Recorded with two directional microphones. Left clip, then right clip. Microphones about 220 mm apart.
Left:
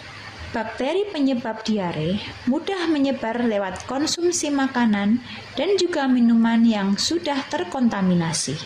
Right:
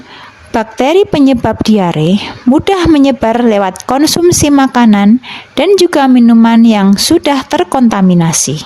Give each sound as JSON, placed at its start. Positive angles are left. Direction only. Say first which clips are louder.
{"t": 0.5, "sound": "a woman's voice", "louder": "right 15 dB", "side_deg": -55}